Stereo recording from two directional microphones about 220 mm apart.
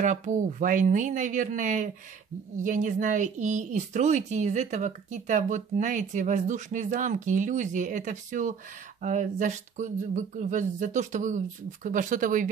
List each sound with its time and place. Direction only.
0.0 s speech: 35° right (ahead or behind)